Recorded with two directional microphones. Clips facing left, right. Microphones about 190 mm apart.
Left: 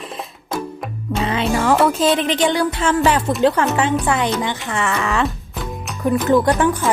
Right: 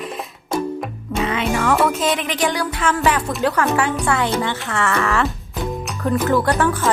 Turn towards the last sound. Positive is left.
turn(degrees=15)  # may be behind; listen again after turning